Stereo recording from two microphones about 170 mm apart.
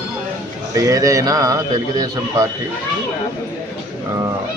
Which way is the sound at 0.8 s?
20° right (ahead or behind).